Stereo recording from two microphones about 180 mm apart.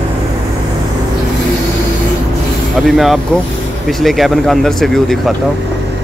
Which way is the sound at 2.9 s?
Centre (ahead or behind).